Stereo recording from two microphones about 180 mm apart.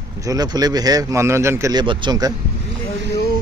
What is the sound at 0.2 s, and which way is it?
A man's voice, 20° right (ahead or behind).